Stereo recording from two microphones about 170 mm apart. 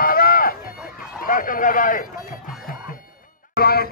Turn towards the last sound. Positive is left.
turn(degrees=65)  # may be behind; listen again after turning